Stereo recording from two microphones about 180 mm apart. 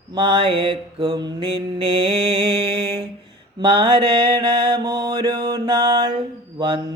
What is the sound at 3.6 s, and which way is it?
Mantra, 25° right (ahead or behind).